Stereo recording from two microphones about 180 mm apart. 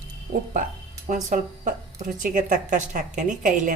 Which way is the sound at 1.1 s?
45° right (ahead or behind).